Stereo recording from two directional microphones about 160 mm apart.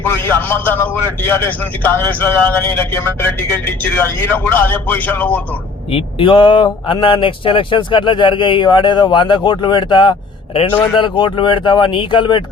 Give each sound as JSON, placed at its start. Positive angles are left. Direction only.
{"t": 0.0, "sound": "a man's voice", "side_deg": 15}
{"t": 5.9, "sound": "speech", "side_deg": 35}